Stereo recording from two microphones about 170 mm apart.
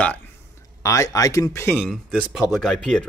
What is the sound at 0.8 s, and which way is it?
Speech, 20° left (ahead or behind).